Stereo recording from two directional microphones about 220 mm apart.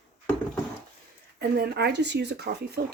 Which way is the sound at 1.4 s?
45° right (ahead or behind).